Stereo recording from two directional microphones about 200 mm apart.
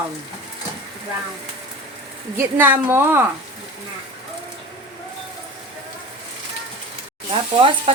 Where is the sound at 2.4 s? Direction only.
10° right (ahead or behind).